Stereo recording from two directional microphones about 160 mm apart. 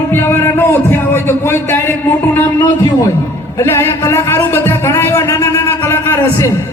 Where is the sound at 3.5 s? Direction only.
15° left (ahead or behind).